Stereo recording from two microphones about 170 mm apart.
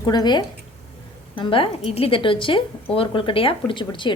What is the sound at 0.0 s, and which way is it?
A woman's voice, 25° left (ahead or behind).